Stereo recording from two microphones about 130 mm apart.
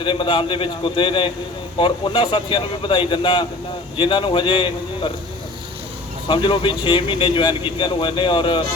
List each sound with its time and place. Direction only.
0.0 s speech: 40° left (ahead or behind)
6.2 s speech: 40° left (ahead or behind)